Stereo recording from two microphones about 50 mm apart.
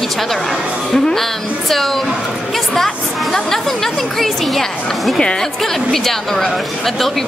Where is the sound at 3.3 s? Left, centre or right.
Centre.